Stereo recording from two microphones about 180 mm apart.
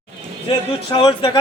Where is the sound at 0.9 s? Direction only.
25° left (ahead or behind).